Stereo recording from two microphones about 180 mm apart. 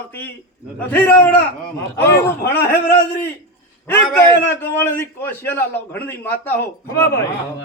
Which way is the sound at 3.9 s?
15° left (ahead or behind).